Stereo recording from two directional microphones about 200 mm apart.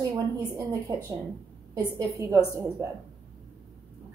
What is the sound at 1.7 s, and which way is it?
Speech, 15° right (ahead or behind).